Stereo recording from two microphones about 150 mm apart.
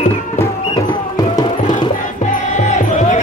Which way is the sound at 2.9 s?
50° left (ahead or behind).